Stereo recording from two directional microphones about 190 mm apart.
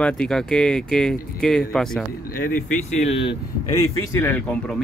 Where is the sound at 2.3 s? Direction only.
45° left (ahead or behind).